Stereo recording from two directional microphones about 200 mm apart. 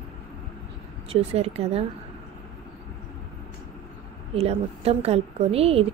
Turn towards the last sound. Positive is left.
turn(degrees=-30)  # may be behind; listen again after turning